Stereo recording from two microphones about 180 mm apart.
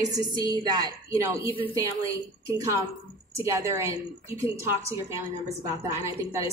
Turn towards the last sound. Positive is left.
turn(degrees=-15)  # may be behind; listen again after turning